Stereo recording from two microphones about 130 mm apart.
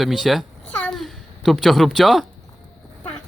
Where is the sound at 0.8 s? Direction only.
Centre (ahead or behind).